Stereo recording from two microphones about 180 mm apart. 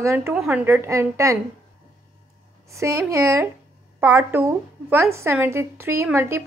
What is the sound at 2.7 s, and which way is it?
A woman's voice, 15° right (ahead or behind).